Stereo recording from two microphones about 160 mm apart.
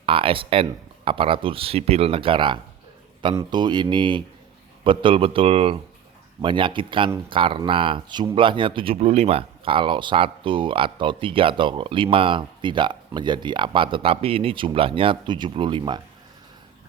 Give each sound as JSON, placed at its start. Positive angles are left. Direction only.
{"t": 0.0, "sound": "speech", "side_deg": -35}